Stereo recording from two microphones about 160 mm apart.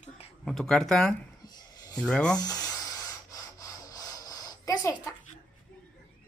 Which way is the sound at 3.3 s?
20° left (ahead or behind).